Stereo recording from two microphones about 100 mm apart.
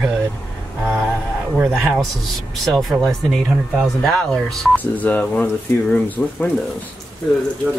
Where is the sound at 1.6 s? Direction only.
Centre (ahead or behind).